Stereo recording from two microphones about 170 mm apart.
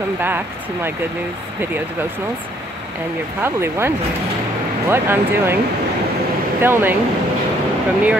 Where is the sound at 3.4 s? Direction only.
15° right (ahead or behind).